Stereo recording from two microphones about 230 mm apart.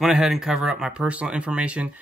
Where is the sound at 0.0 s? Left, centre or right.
Centre.